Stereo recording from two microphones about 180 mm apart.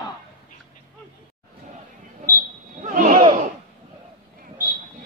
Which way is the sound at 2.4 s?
45° right (ahead or behind).